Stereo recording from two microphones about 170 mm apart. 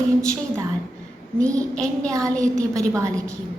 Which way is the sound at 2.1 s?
20° right (ahead or behind).